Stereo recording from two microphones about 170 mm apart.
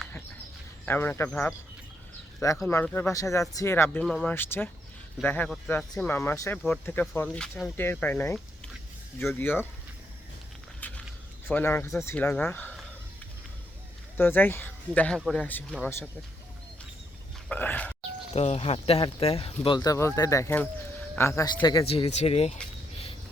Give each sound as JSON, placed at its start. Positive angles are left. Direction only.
{"t": 0.9, "sound": "speech", "side_deg": 10}
{"t": 10.8, "sound": "a sound", "side_deg": 10}
{"t": 11.4, "sound": "speech", "side_deg": 15}
{"t": 14.2, "sound": "speech", "side_deg": 10}
{"t": 17.5, "sound": "speech", "side_deg": 10}
{"t": 18.3, "sound": "speech", "side_deg": 35}